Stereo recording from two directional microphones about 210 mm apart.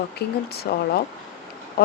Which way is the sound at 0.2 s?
50° left (ahead or behind).